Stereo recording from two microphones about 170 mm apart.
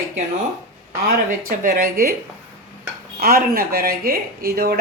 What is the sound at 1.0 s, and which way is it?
Speech, 60° right (ahead or behind).